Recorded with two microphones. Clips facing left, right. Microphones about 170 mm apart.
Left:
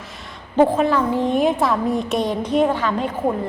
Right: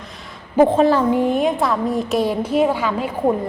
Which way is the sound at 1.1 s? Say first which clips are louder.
Right 1 dB; 5° right (ahead or behind).